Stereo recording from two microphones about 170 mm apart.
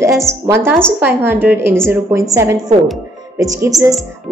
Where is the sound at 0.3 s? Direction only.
15° right (ahead or behind).